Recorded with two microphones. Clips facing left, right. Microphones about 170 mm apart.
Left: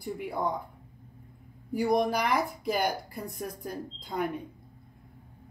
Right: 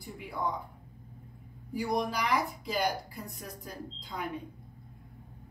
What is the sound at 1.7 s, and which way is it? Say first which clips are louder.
Speech: left 6 dB; 55° left (ahead or behind).